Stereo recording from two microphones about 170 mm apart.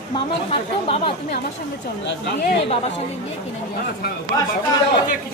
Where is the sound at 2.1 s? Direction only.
85° left.